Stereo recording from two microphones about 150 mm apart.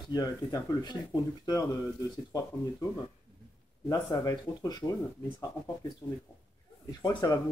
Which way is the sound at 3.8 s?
25° left (ahead or behind).